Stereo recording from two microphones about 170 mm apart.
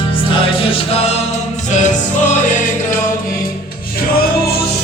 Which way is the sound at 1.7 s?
45° left (ahead or behind).